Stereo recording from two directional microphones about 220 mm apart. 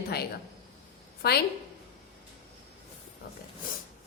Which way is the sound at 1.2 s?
45° left (ahead or behind).